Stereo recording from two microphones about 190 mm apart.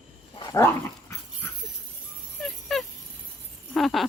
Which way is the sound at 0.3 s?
20° left (ahead or behind).